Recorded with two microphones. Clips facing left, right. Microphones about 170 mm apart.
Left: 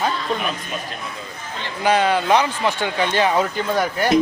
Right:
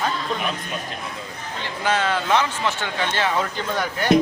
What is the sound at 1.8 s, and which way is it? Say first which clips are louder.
A man's voice: left 5 dB; 15° left (ahead or behind).